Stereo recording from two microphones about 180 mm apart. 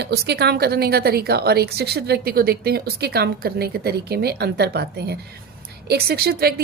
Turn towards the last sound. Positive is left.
turn(degrees=-55)  # may be behind; listen again after turning